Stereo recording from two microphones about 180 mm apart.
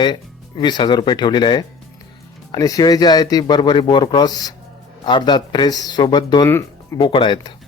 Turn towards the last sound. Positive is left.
turn(degrees=25)  # may be behind; listen again after turning